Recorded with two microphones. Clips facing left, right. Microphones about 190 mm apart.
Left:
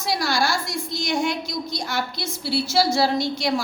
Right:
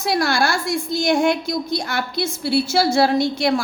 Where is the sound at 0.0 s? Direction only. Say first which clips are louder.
Right 4 dB; 55° right (ahead or behind).